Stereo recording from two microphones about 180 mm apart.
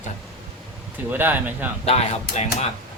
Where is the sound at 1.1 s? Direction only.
10° right (ahead or behind).